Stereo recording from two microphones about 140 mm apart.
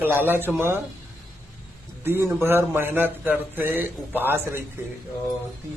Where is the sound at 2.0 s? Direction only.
15° right (ahead or behind).